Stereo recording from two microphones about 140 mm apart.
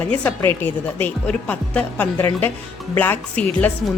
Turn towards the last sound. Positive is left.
turn(degrees=10)  # may be behind; listen again after turning